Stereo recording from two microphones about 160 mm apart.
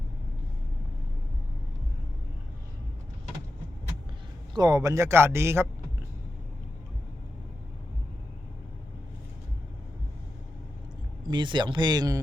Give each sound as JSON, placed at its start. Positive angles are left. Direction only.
{"t": 4.5, "sound": "speech", "side_deg": -25}
{"t": 11.3, "sound": "speech", "side_deg": -30}